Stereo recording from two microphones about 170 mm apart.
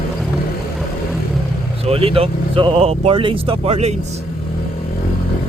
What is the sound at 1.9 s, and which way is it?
Speech, 35° right (ahead or behind).